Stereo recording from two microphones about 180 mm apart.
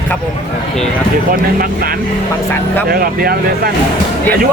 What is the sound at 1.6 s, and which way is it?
Speech, 55° right (ahead or behind).